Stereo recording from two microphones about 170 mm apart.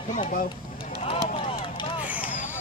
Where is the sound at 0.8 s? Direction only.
35° left (ahead or behind).